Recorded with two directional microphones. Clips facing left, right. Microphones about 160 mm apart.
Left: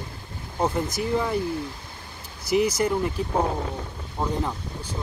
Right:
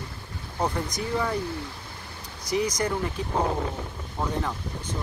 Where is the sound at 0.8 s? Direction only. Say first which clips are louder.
Left 3 dB; 5° left (ahead or behind).